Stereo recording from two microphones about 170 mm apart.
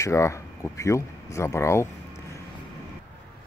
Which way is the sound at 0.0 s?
15° left (ahead or behind).